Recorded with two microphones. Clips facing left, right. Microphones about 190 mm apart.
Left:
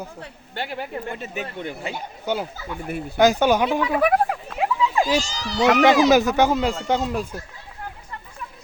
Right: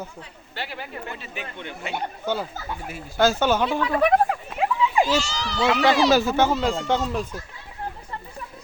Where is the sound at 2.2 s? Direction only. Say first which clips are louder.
Left 4 dB; 15° left (ahead or behind).